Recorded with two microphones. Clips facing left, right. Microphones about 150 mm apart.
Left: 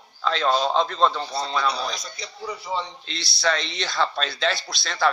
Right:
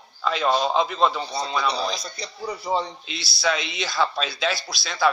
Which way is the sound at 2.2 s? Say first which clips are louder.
Right 2 dB; 40° right (ahead or behind).